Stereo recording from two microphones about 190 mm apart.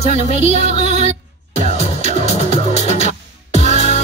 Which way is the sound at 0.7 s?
35° right (ahead or behind).